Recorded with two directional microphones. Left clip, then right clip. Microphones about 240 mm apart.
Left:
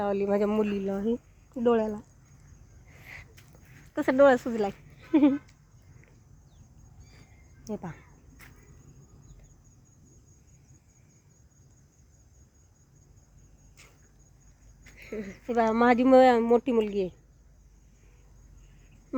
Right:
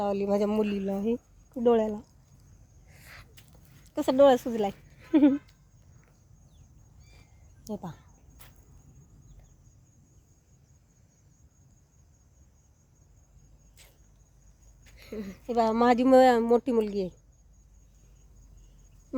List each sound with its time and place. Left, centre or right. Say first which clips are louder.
0.0 s speech: left 1 dB; centre
3.9 s speech: even; centre
7.6 s speech: left 1 dB; centre
14.9 s a sound: left 2 dB; centre
15.4 s speech: even; centre